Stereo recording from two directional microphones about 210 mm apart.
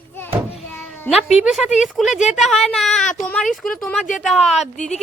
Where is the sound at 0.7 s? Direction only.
10° left (ahead or behind).